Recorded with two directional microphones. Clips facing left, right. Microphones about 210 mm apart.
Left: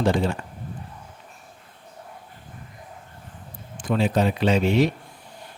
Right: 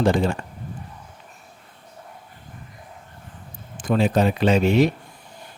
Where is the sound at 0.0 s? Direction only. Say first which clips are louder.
Right 2 dB; 45° right (ahead or behind).